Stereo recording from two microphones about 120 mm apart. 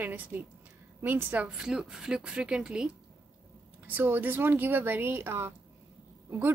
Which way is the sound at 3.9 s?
15° right (ahead or behind).